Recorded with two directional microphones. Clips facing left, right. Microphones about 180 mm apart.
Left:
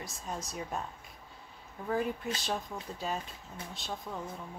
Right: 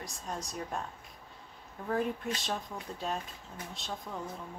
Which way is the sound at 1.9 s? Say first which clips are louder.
Even; centre (ahead or behind).